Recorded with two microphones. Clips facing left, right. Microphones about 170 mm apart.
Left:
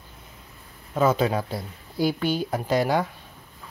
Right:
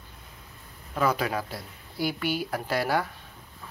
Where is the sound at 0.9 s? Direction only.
25° left (ahead or behind).